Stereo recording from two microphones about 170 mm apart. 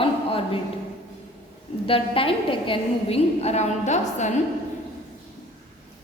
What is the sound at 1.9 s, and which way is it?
A woman's voice, 30° left (ahead or behind).